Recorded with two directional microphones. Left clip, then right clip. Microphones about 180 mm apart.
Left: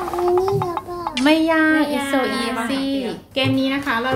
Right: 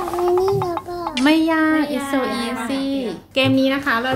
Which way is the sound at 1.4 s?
20° right (ahead or behind).